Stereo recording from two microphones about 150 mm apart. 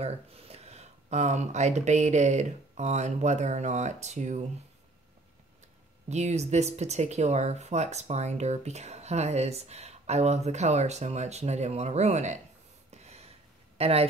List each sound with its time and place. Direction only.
0.0 s speech: 45° right (ahead or behind)
6.0 s speech: 50° right (ahead or behind)
12.9 s gasp: 45° right (ahead or behind)
13.7 s speech: 40° right (ahead or behind)